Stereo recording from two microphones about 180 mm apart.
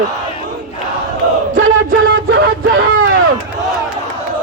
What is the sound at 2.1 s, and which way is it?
Vehicle, 60° right (ahead or behind).